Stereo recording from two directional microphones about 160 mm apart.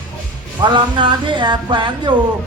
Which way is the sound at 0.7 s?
30° right (ahead or behind).